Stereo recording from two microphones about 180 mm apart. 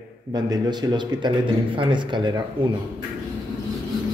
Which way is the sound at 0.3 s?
25° right (ahead or behind).